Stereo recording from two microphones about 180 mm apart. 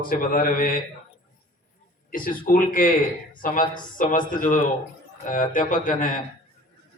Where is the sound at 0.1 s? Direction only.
50° left (ahead or behind).